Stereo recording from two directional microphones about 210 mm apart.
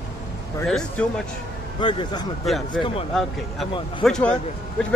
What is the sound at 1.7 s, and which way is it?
Speech, 20° left (ahead or behind).